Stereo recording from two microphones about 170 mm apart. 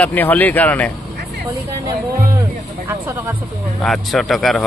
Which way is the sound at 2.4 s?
20° right (ahead or behind).